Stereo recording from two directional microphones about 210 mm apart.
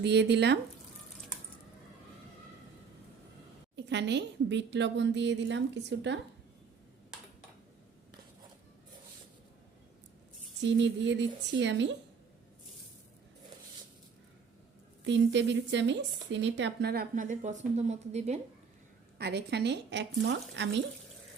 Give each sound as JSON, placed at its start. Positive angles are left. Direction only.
{"t": 0.0, "sound": "speech", "side_deg": -55}
{"t": 3.8, "sound": "a woman's voice", "side_deg": -55}
{"t": 10.6, "sound": "a woman's voice", "side_deg": -60}
{"t": 15.0, "sound": "speech", "side_deg": -60}
{"t": 19.2, "sound": "speech", "side_deg": -50}